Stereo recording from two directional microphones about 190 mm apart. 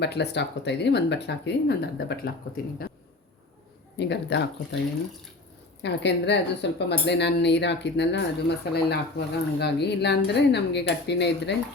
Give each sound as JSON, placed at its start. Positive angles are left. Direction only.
{"t": 0.0, "sound": "speech", "side_deg": 60}
{"t": 3.9, "sound": "speech", "side_deg": 65}
{"t": 5.8, "sound": "speech", "side_deg": 65}